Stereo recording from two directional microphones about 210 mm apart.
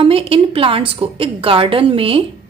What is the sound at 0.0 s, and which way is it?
A woman's voice, 25° right (ahead or behind).